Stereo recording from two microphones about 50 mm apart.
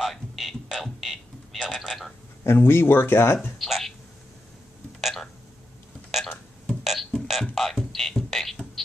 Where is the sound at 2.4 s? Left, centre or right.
Left.